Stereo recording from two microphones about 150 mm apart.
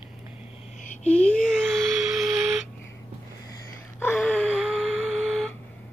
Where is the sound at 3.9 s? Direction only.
10° left (ahead or behind).